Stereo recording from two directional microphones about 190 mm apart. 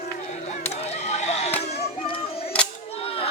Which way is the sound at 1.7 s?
30° left (ahead or behind).